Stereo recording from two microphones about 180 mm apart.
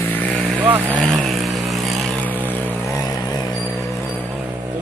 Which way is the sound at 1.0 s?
Centre (ahead or behind).